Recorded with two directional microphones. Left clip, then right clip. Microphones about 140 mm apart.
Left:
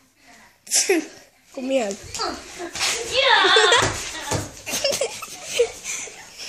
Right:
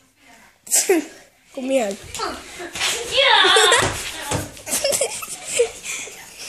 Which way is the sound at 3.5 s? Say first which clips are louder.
Right 1 dB; 5° right (ahead or behind).